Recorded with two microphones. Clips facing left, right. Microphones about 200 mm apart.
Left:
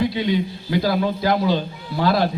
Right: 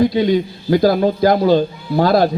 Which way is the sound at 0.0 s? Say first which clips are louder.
Right 6 dB; 40° right (ahead or behind).